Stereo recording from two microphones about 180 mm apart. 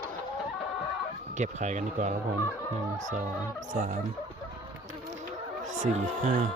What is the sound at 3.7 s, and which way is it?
Speech, 40° right (ahead or behind).